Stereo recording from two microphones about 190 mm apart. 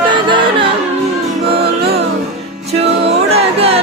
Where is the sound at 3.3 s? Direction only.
30° right (ahead or behind).